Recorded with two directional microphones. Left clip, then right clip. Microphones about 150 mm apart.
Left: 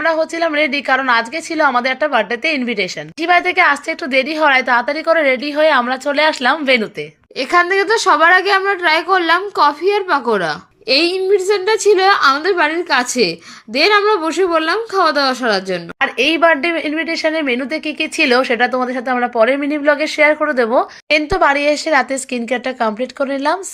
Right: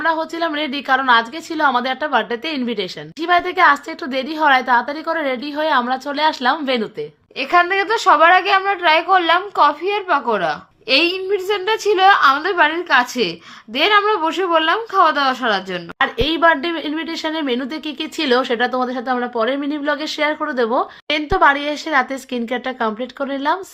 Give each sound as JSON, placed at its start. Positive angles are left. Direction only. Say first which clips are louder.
{"t": 0.0, "sound": "a woman's voice", "louder": "left 3 dB", "side_deg": 5}
{"t": 7.3, "sound": "a woman's voice", "louder": "left 2 dB", "side_deg": 30}
{"t": 16.0, "sound": "a woman's voice", "louder": "left 3 dB", "side_deg": 15}